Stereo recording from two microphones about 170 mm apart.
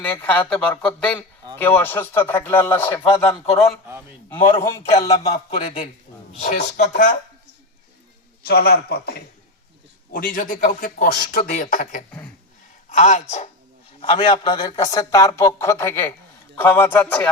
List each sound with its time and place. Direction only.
0.0 s a man's voice: 10° left (ahead or behind)
4.9 s speech: 40° left (ahead or behind)
5.5 s speech: 50° left (ahead or behind)
8.4 s a man's voice: 65° left (ahead or behind)
10.1 s speech: 50° left (ahead or behind)
14.0 s a man's voice: 30° left (ahead or behind); by 17.2 s 10° left (ahead or behind)